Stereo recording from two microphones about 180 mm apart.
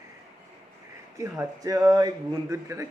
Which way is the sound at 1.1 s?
15° right (ahead or behind).